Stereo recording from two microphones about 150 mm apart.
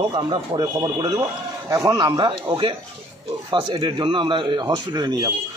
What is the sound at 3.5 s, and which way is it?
Speech, 30° right (ahead or behind).